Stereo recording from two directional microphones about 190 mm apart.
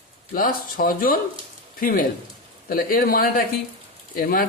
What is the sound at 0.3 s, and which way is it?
Speech, 45° left (ahead or behind).